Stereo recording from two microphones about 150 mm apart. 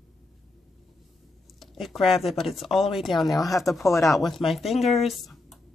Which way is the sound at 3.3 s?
25° left (ahead or behind).